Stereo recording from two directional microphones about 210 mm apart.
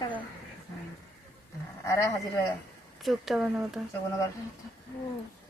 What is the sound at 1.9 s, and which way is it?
Speech, 15° left (ahead or behind).